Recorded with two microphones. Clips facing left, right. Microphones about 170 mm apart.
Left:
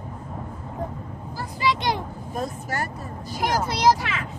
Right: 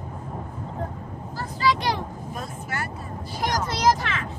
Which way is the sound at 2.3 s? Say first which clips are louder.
Left 6 dB; 40° left (ahead or behind).